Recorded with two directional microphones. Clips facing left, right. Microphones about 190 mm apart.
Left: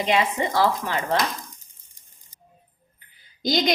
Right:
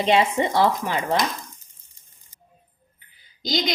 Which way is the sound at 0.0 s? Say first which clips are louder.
Right 3 dB; 30° right (ahead or behind).